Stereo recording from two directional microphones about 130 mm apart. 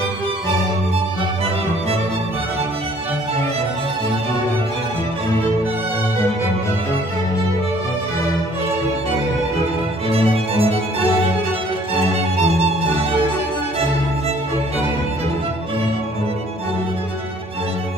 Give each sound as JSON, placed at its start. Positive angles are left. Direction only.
{"t": 10.0, "sound": "music", "side_deg": -45}
{"t": 11.9, "sound": "music", "side_deg": -50}